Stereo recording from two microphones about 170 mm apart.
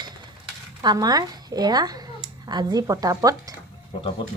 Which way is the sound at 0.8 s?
25° right (ahead or behind).